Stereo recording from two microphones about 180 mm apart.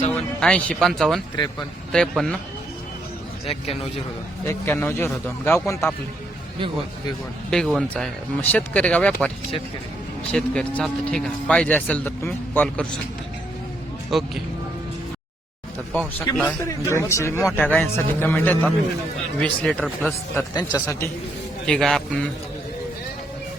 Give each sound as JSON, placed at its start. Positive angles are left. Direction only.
{"t": 0.1, "sound": "speech", "side_deg": 5}
{"t": 4.4, "sound": "speech", "side_deg": 10}
{"t": 7.5, "sound": "speech", "side_deg": 0}
{"t": 10.3, "sound": "speech", "side_deg": 5}
{"t": 14.1, "sound": "speech", "side_deg": 0}
{"t": 15.9, "sound": "speech", "side_deg": 10}
{"t": 20.3, "sound": "a man's voice", "side_deg": 20}
{"t": 21.7, "sound": "speech", "side_deg": 0}